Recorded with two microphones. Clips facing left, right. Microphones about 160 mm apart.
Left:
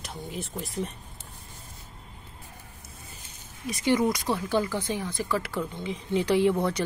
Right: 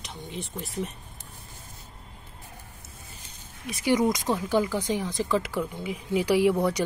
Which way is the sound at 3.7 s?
10° right (ahead or behind).